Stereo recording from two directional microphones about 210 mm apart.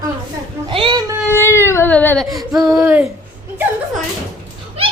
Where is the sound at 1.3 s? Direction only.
10° left (ahead or behind).